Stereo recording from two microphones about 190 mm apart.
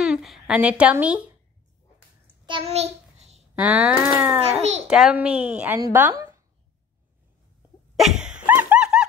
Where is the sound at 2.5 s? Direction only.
30° right (ahead or behind).